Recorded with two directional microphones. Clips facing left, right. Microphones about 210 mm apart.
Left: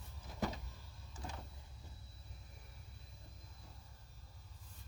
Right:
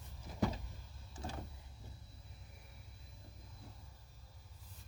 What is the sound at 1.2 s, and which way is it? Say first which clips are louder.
Power windows: right 3 dB; 30° right (ahead or behind).